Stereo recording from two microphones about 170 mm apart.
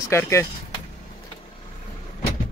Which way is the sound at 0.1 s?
15° left (ahead or behind).